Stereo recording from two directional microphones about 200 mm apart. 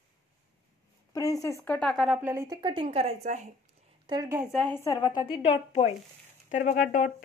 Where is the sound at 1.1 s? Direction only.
15° left (ahead or behind); by 2.3 s centre (ahead or behind).